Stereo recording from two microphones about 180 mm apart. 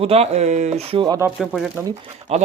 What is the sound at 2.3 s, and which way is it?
Speech, 35° right (ahead or behind).